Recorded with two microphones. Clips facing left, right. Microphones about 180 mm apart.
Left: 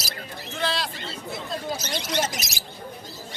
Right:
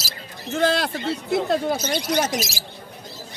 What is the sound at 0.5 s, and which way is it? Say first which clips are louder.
Speech: right 8 dB; 50° right (ahead or behind).